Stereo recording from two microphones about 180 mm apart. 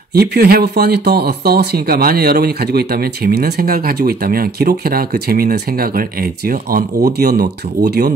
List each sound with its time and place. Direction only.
0.1 s speech: 60° right (ahead or behind)